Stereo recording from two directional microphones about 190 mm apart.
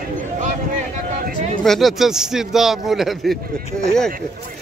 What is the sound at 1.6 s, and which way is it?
Speech, centre (ahead or behind).